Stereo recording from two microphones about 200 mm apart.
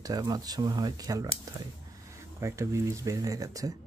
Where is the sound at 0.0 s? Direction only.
20° right (ahead or behind).